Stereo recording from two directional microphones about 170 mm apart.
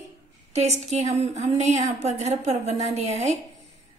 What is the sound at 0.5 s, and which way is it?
A woman's voice, 40° right (ahead or behind).